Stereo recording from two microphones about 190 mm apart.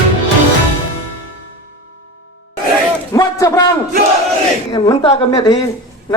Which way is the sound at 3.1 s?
20° left (ahead or behind).